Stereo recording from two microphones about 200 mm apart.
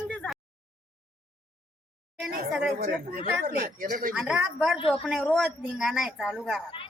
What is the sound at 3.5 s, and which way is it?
Speech, 45° right (ahead or behind).